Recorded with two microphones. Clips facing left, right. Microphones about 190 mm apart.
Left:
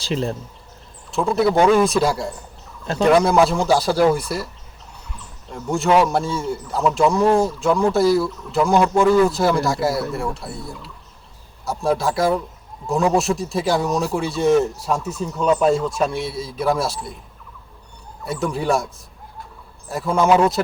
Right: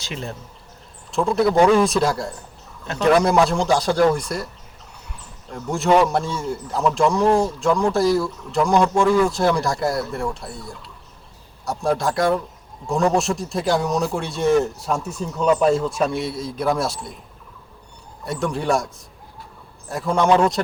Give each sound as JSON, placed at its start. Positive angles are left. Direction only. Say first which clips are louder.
{"t": 0.0, "sound": "speech", "louder": "left 8 dB", "side_deg": 35}
{"t": 1.1, "sound": "speech", "louder": "even", "side_deg": 0}
{"t": 5.5, "sound": "speech", "louder": "even", "side_deg": 0}
{"t": 18.3, "sound": "speech", "louder": "left 1 dB", "side_deg": 0}
{"t": 19.9, "sound": "speech", "louder": "left 1 dB", "side_deg": 0}